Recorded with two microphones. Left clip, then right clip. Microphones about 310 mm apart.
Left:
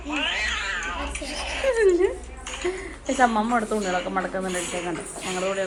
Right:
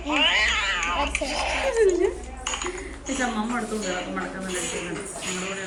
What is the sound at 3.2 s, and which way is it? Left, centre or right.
Speech, centre.